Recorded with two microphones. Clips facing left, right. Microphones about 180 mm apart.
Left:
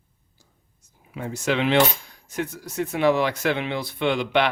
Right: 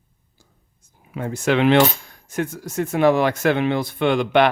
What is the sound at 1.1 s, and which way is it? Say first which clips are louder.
Speech: right 5 dB; 55° right (ahead or behind).